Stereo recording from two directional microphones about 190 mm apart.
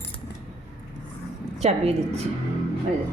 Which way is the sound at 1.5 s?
35° right (ahead or behind).